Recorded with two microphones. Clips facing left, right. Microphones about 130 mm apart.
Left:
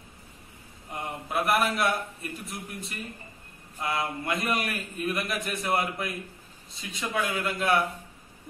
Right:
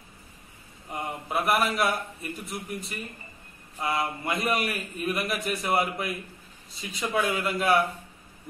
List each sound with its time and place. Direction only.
0.9 s a man's voice: centre (ahead or behind)